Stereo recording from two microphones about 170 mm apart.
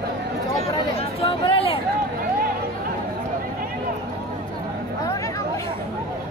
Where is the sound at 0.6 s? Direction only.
35° left (ahead or behind).